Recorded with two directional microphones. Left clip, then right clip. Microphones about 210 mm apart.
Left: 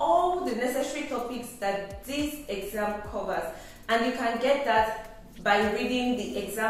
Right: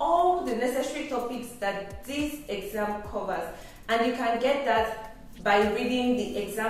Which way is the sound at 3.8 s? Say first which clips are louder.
Right 1 dB; centre (ahead or behind).